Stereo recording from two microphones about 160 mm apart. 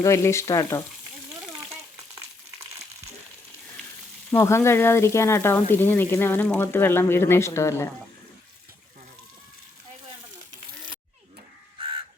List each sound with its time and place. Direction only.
0.0 s frying: 20° left (ahead or behind)
4.3 s speech: 15° left (ahead or behind)